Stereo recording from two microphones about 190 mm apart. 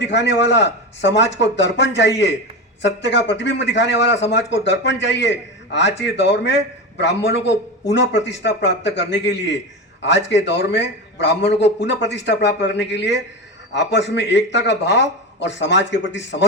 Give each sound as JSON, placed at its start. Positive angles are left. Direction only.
{"t": 0.0, "sound": "a man's voice", "side_deg": 65}